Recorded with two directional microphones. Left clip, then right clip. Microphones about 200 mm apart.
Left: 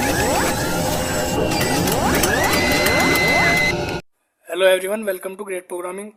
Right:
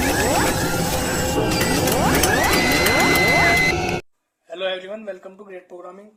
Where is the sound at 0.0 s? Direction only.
Centre (ahead or behind).